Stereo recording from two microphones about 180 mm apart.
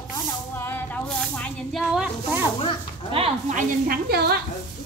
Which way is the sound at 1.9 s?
10° right (ahead or behind).